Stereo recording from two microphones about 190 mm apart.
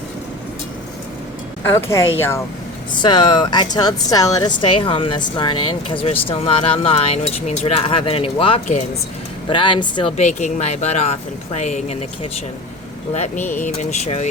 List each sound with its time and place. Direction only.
1.6 s speech: 15° left (ahead or behind); by 14.3 s 35° left (ahead or behind)